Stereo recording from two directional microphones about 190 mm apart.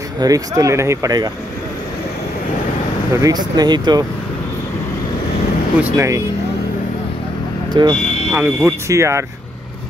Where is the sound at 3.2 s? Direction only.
20° right (ahead or behind).